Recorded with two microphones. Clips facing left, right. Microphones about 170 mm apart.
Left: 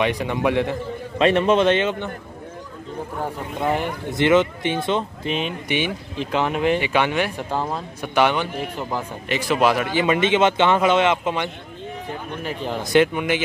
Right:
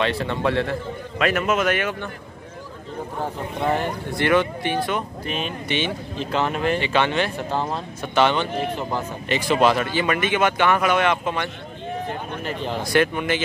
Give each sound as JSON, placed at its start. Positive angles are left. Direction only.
{"t": 0.0, "sound": "speech", "side_deg": 15}
{"t": 1.1, "sound": "speech", "side_deg": 30}
{"t": 3.6, "sound": "speech", "side_deg": 15}
{"t": 12.8, "sound": "speech", "side_deg": 20}